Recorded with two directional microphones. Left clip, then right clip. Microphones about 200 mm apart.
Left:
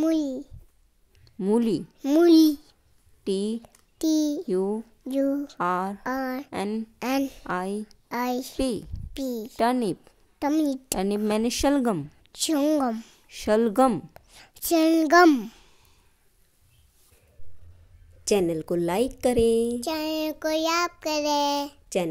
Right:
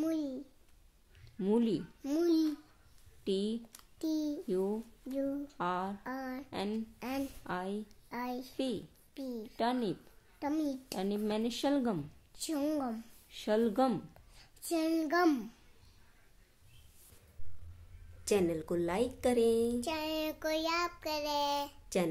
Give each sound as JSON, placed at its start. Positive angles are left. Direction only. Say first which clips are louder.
{"t": 0.0, "sound": "a sound", "louder": "left 11 dB", "side_deg": 40}
{"t": 1.4, "sound": "a child's voice", "louder": "left 8 dB", "side_deg": 30}
{"t": 4.0, "sound": "a child's voice", "louder": "left 11 dB", "side_deg": 45}
{"t": 6.0, "sound": "speech", "louder": "left 12 dB", "side_deg": 45}
{"t": 7.0, "sound": "a child's voice", "louder": "left 12 dB", "side_deg": 45}
{"t": 18.2, "sound": "a woman's voice", "louder": "left 8 dB", "side_deg": 30}